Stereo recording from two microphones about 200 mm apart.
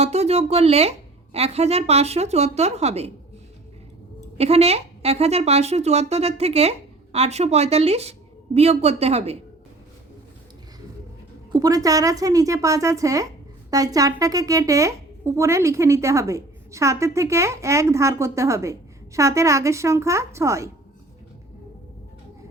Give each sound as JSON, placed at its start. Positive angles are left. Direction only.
{"t": 0.0, "sound": "a woman's voice", "side_deg": -30}
{"t": 4.4, "sound": "a woman's voice", "side_deg": -30}
{"t": 11.5, "sound": "speech", "side_deg": -20}